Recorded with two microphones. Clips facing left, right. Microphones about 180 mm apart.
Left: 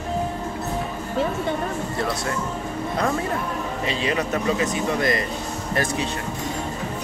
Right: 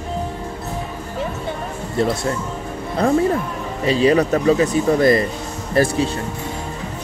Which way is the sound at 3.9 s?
35° right (ahead or behind).